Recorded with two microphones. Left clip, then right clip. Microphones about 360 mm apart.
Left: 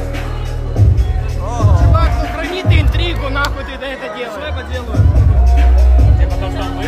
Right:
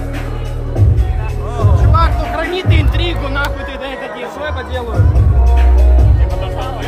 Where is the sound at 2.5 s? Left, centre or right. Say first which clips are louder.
Right 1 dB; centre.